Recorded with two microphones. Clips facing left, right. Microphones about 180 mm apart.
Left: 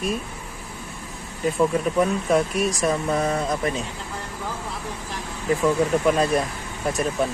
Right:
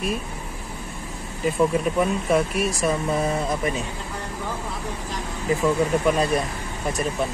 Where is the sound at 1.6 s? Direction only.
5° right (ahead or behind).